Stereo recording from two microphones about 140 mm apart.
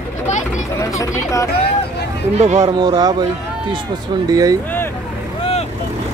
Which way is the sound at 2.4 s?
55° right (ahead or behind).